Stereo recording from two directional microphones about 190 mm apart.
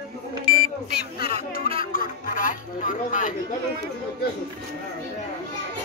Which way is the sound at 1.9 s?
45° left (ahead or behind).